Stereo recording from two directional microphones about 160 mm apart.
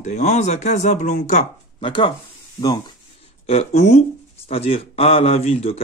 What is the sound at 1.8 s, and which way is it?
Speech, 30° left (ahead or behind).